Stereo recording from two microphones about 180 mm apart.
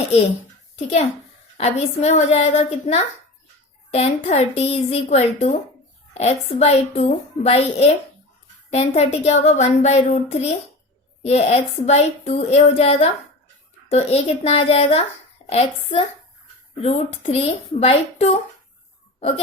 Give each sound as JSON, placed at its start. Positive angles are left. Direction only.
{"t": 1.5, "sound": "a woman's voice", "side_deg": 35}